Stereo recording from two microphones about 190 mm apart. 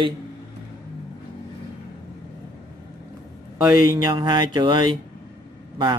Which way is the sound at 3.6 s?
15° right (ahead or behind).